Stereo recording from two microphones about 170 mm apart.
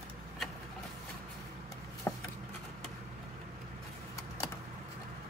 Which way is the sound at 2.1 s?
15° left (ahead or behind).